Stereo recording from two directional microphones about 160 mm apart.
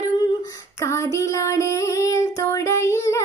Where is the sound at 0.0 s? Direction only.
25° left (ahead or behind).